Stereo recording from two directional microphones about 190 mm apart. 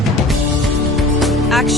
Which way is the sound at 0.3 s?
Centre (ahead or behind).